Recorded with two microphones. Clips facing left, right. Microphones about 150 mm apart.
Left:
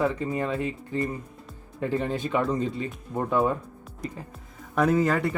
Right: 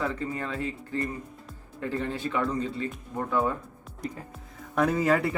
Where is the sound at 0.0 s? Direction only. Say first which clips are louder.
Left 5 dB; 15° left (ahead or behind).